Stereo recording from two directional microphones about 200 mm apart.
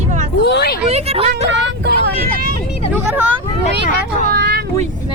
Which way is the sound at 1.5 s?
60° right (ahead or behind).